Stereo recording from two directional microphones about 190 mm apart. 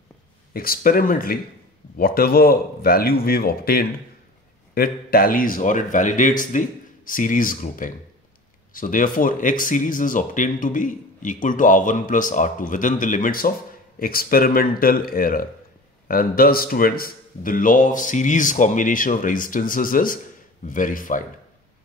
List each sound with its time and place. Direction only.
0.5 s speech: 50° left (ahead or behind)